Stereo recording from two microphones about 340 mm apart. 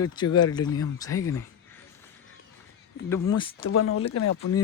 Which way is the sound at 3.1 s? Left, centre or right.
Centre.